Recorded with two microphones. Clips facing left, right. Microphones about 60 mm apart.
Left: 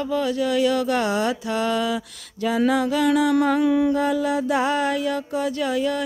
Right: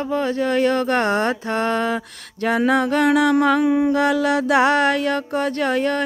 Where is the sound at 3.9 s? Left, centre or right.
Right.